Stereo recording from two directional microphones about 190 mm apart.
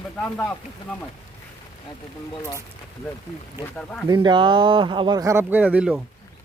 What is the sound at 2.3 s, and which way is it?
Speech, 20° left (ahead or behind).